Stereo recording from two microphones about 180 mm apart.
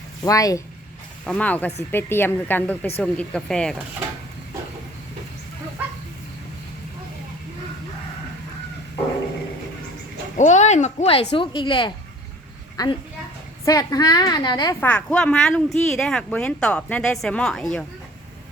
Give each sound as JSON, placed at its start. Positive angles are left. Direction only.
{"t": 0.3, "sound": "a woman's voice", "side_deg": 20}
{"t": 1.2, "sound": "speech", "side_deg": 5}
{"t": 10.3, "sound": "a woman's voice", "side_deg": 40}
{"t": 14.8, "sound": "speech", "side_deg": 5}